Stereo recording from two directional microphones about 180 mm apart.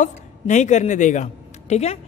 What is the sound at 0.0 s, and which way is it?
A woman's voice, 40° left (ahead or behind).